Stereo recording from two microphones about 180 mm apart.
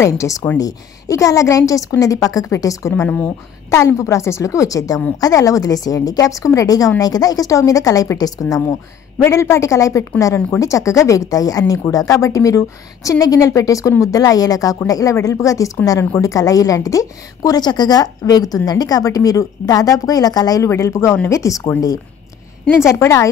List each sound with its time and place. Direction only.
0.2 s a woman's voice: 15° left (ahead or behind)